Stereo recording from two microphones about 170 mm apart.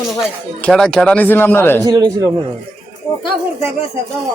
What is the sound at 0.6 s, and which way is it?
Speech, 5° left (ahead or behind).